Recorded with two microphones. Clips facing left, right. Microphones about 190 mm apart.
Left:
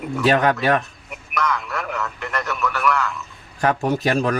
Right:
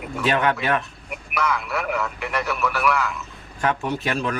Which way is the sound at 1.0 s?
10° right (ahead or behind).